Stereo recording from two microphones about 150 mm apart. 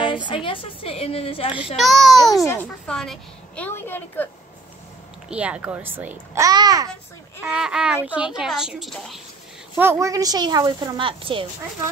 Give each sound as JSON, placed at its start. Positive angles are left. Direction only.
{"t": 0.0, "sound": "a woman's voice", "side_deg": 30}
{"t": 1.8, "sound": "a child's voice", "side_deg": 0}
{"t": 5.3, "sound": "a child's voice", "side_deg": -10}
{"t": 7.4, "sound": "a child's voice", "side_deg": -5}
{"t": 9.8, "sound": "speech", "side_deg": -20}
{"t": 11.0, "sound": "a woman's voice", "side_deg": -35}